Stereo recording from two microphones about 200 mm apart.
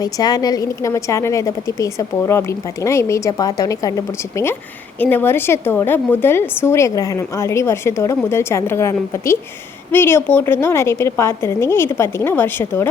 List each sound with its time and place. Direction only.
0.0 s a woman's voice: 20° left (ahead or behind)